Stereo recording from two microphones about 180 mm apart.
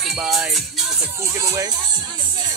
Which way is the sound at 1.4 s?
20° right (ahead or behind).